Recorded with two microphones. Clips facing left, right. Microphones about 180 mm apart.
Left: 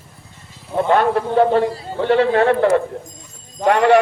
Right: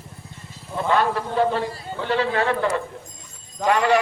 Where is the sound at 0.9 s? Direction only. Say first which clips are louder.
Left 4 dB; 55° left (ahead or behind).